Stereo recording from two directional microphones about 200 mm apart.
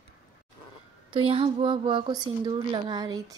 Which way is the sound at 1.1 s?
25° right (ahead or behind).